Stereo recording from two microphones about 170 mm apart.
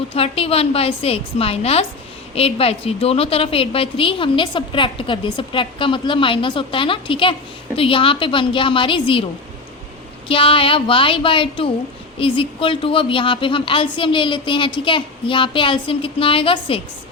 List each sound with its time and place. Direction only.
0.1 s a woman's voice: 35° left (ahead or behind)
10.2 s a woman's voice: 30° left (ahead or behind)